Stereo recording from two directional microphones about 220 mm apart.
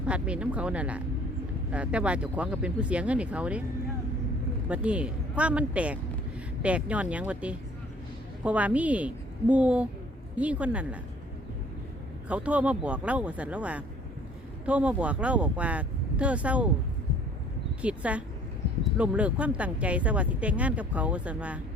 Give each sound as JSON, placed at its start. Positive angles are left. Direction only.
{"t": 0.0, "sound": "speech", "side_deg": -5}
{"t": 4.7, "sound": "a woman's voice", "side_deg": -5}
{"t": 12.3, "sound": "speech", "side_deg": -5}
{"t": 17.8, "sound": "speech", "side_deg": -5}